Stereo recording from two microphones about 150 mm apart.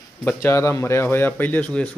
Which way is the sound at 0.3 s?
15° left (ahead or behind).